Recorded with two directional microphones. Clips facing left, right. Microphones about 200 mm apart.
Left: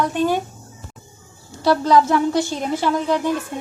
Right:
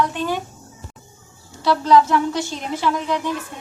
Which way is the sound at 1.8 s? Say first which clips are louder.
Right 2 dB; 35° left (ahead or behind).